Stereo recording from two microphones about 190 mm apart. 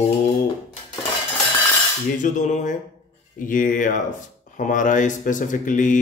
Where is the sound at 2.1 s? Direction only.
40° left (ahead or behind).